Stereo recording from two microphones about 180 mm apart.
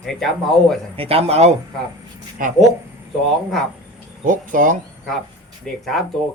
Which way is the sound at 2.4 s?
50° right (ahead or behind).